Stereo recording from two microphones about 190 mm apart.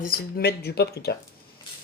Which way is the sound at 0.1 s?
55° left (ahead or behind).